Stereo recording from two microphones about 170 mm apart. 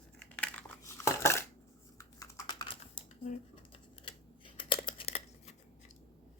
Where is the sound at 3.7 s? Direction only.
30° left (ahead or behind).